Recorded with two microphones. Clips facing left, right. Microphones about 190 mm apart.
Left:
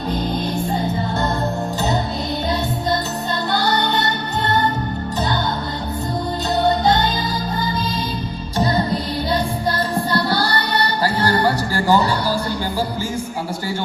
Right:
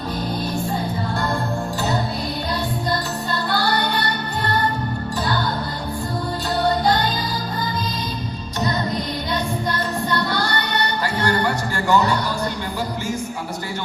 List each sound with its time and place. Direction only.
3.5 s music: 20° left (ahead or behind)
6.6 s music: 20° left (ahead or behind)
8.5 s music: 30° left (ahead or behind)